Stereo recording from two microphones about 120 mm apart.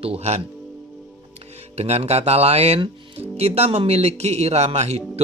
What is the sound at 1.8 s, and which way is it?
Speech, 60° right (ahead or behind).